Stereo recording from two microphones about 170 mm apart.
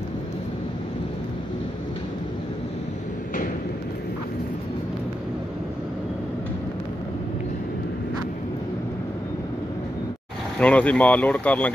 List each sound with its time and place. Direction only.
10.6 s speech: 10° left (ahead or behind)